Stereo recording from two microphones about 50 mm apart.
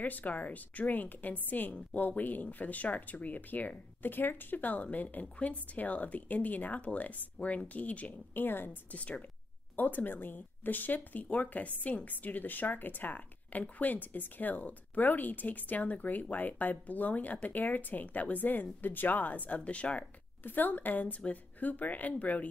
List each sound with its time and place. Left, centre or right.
0.0 s a woman's voice: left
8.9 s speech: left
9.8 s a woman's voice: left
20.4 s a woman's voice: left